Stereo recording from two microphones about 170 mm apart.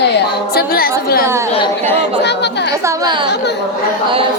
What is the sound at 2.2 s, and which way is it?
Chatter, 90° left.